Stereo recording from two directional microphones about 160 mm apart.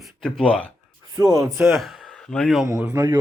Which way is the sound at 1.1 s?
20° right (ahead or behind).